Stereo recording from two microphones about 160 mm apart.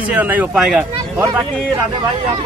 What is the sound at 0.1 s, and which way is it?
Speech, 10° right (ahead or behind).